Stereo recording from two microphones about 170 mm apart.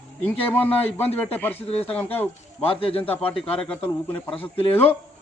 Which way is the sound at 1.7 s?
35° left (ahead or behind).